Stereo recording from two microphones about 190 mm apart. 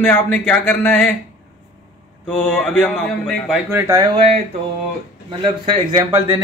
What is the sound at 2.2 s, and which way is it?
A man's voice, 5° left (ahead or behind).